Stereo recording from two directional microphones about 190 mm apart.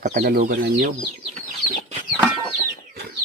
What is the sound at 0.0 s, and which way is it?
Speech, 45° right (ahead or behind).